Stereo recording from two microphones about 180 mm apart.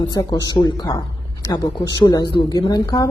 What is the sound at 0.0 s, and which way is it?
Speech, 20° left (ahead or behind).